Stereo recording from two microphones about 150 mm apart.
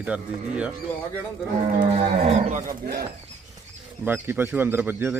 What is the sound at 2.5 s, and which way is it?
Speech, 60° right (ahead or behind).